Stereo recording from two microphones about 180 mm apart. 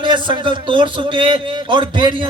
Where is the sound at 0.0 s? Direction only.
25° right (ahead or behind).